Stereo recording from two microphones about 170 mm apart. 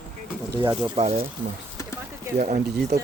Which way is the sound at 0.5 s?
20° right (ahead or behind).